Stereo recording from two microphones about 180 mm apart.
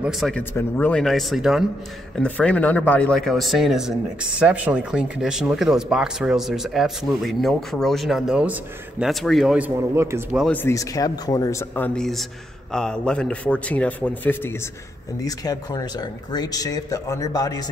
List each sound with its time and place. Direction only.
0.0 s speech: centre (ahead or behind)
0.4 s speech: 10° left (ahead or behind)